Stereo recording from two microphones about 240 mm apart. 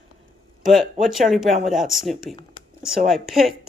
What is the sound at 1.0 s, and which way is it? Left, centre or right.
Speech, centre.